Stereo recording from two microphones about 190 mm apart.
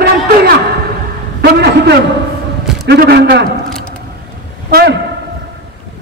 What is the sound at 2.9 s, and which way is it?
Speech, 60° right (ahead or behind).